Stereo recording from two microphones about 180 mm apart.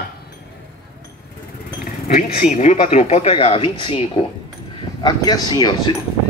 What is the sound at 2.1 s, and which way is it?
Speech, 50° left (ahead or behind).